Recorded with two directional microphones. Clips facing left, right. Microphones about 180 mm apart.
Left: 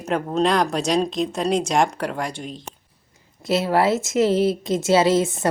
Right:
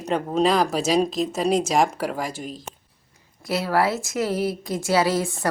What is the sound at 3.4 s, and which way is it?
A woman's voice, 25° left (ahead or behind).